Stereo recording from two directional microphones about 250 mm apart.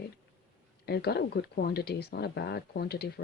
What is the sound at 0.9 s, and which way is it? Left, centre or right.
Speech, left.